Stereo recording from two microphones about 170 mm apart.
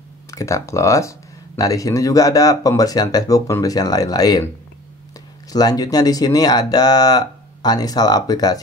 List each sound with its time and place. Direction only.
0.3 s speech: 20° left (ahead or behind)
5.5 s speech: 20° left (ahead or behind)